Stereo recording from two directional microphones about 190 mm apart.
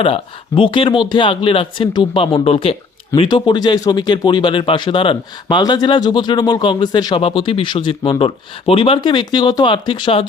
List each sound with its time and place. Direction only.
0.0 s speech: 25° left (ahead or behind)